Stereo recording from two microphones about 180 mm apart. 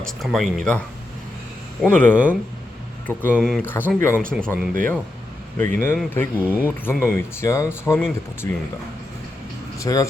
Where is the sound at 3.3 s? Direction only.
Centre (ahead or behind).